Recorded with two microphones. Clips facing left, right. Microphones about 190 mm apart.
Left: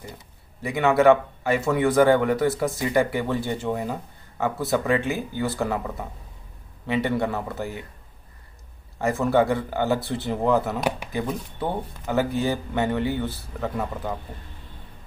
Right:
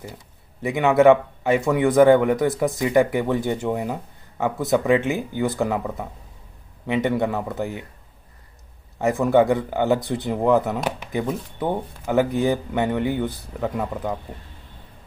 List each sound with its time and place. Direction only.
0.6 s speech: 20° right (ahead or behind)
8.9 s speech: 15° right (ahead or behind)